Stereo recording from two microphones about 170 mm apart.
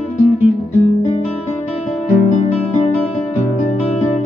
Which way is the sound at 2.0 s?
45° left (ahead or behind).